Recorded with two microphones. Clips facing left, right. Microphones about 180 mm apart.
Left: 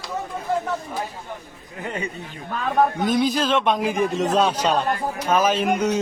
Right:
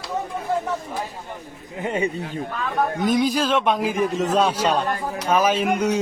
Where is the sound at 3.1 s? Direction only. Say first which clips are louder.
Even; 10° right (ahead or behind).